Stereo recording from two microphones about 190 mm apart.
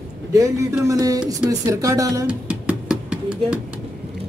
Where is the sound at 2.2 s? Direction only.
5° right (ahead or behind).